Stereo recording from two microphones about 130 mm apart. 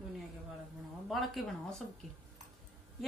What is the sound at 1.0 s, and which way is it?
Speech, centre (ahead or behind).